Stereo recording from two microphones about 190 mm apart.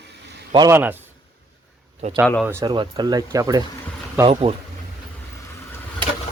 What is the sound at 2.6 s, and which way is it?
Speech, 25° right (ahead or behind).